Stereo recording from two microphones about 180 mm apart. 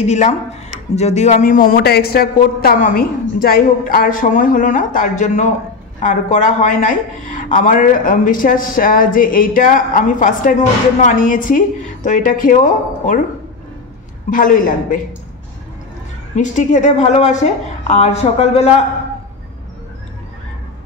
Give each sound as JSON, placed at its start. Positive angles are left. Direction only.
{"t": 0.0, "sound": "a woman's voice", "side_deg": 40}
{"t": 14.3, "sound": "a woman's voice", "side_deg": 50}
{"t": 16.3, "sound": "a woman's voice", "side_deg": 45}